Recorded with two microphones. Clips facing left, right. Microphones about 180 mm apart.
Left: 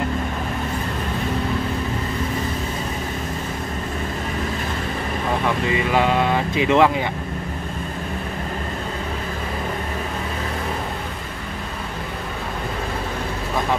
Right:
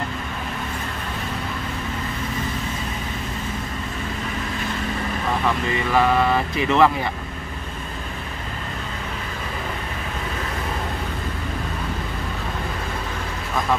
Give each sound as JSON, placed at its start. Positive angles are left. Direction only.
{"t": 5.7, "sound": "speech", "side_deg": 15}